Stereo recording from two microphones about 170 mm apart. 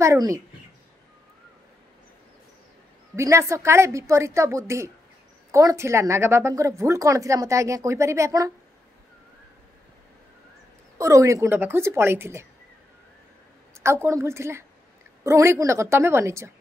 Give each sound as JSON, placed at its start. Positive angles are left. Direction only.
{"t": 0.0, "sound": "speech", "side_deg": -20}
{"t": 3.2, "sound": "speech", "side_deg": -15}
{"t": 11.0, "sound": "speech", "side_deg": -20}
{"t": 13.8, "sound": "speech", "side_deg": -15}